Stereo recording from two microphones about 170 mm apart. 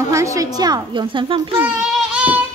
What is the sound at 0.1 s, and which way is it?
A woman's voice, 20° right (ahead or behind).